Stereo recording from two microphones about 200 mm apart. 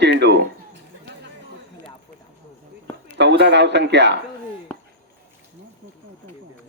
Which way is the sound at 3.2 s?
60° right (ahead or behind).